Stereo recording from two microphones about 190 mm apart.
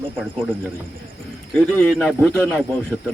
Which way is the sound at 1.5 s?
5° left (ahead or behind).